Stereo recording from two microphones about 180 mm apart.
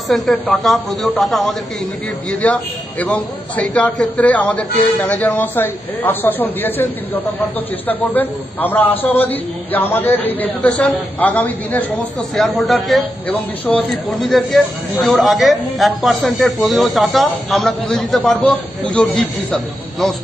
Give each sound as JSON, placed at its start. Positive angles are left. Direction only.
{"t": 0.1, "sound": "a man's voice", "side_deg": 0}